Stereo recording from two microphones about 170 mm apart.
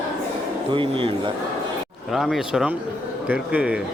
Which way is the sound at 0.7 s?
30° right (ahead or behind).